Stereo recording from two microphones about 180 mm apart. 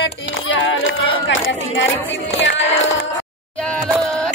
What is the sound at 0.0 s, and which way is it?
Music, 90° left.